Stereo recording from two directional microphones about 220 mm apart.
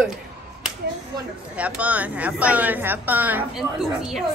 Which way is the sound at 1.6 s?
5° right (ahead or behind).